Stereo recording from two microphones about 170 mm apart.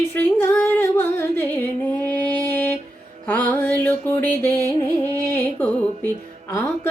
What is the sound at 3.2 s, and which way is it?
Mantra, 10° left (ahead or behind).